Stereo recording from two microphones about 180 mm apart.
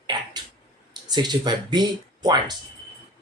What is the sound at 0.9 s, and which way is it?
Speech, 25° right (ahead or behind).